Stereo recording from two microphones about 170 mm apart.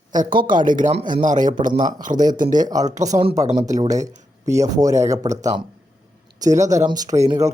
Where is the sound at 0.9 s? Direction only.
30° right (ahead or behind).